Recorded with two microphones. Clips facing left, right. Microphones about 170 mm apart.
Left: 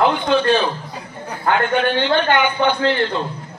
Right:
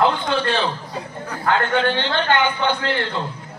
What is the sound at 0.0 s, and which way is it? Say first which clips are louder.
A man's voice: left 3 dB; 20° left (ahead or behind).